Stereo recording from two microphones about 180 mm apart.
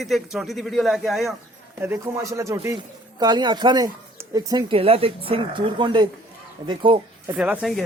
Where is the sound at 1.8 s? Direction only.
15° right (ahead or behind).